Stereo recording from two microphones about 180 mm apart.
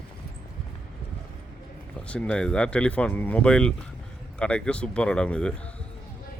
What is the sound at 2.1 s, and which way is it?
Speech, 5° left (ahead or behind).